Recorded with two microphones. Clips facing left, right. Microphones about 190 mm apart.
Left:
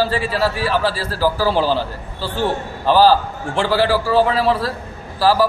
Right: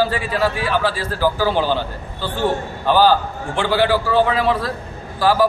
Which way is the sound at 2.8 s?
35° left (ahead or behind).